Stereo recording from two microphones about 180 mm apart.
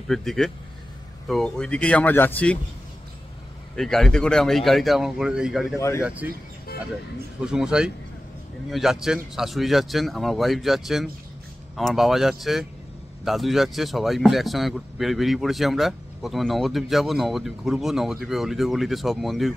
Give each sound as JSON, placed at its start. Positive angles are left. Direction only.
{"t": 0.1, "sound": "speech", "side_deg": 0}
{"t": 3.7, "sound": "speech", "side_deg": 0}
{"t": 5.8, "sound": "speech", "side_deg": 15}
{"t": 6.0, "sound": "speech", "side_deg": -10}
{"t": 7.4, "sound": "speech", "side_deg": -5}